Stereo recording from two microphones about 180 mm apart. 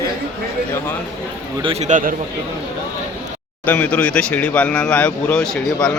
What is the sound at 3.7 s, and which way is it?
Speech, 10° left (ahead or behind).